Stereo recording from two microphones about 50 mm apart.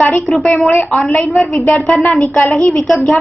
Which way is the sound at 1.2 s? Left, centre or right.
Centre.